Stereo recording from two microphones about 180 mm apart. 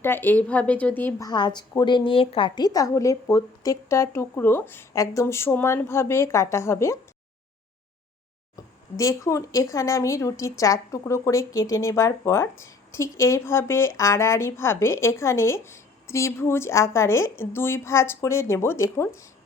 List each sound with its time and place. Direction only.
0.0 s speech: 10° left (ahead or behind)
1.3 s speech: 25° left (ahead or behind)
8.5 s speech: 20° left (ahead or behind)